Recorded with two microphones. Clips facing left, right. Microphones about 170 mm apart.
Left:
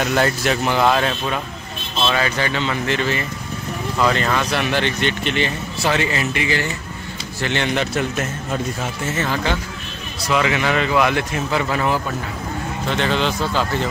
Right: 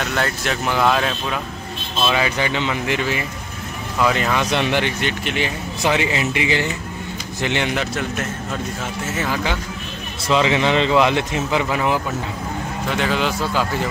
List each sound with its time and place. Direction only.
0.0 s speech: 5° left (ahead or behind)
2.0 s speech: 10° right (ahead or behind)
9.0 s speech: 10° right (ahead or behind)
10.2 s speech: 25° right (ahead or behind); by 13.8 s 10° right (ahead or behind)